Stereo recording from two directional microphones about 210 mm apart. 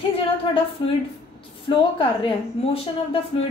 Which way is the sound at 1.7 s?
25° left (ahead or behind).